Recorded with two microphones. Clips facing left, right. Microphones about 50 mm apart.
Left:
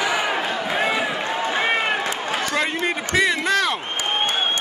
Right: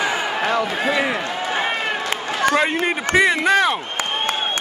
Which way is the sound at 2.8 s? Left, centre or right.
Centre.